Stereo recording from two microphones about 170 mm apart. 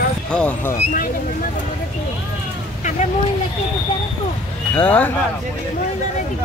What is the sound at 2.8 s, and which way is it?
Vehicle, 45° left (ahead or behind).